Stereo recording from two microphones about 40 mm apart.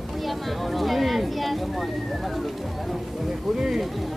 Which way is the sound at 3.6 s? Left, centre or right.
Centre.